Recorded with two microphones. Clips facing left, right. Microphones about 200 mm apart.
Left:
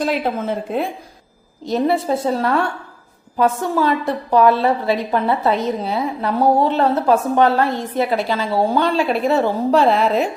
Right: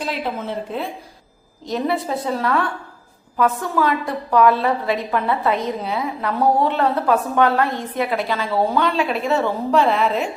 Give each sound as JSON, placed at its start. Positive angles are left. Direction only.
{"t": 0.0, "sound": "a woman's voice", "side_deg": 45}
{"t": 1.6, "sound": "a woman's voice", "side_deg": 30}